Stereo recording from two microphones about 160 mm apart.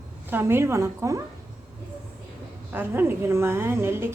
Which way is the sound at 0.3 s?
15° right (ahead or behind).